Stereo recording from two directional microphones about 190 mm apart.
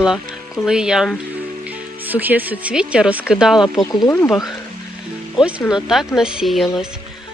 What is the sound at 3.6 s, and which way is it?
Speech, 20° left (ahead or behind).